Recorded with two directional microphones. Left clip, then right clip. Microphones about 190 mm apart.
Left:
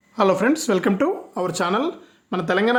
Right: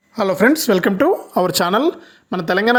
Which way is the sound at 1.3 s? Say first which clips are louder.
Right 6 dB; 45° right (ahead or behind).